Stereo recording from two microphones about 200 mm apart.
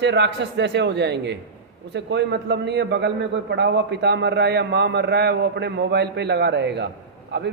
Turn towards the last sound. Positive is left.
turn(degrees=-55)  # may be behind; listen again after turning